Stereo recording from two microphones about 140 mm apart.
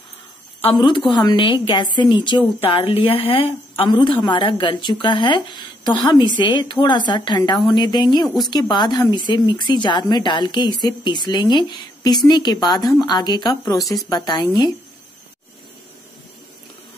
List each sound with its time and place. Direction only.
0.7 s a woman's voice: 35° left (ahead or behind)